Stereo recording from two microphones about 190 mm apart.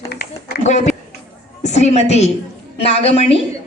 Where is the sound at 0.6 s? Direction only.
40° left (ahead or behind).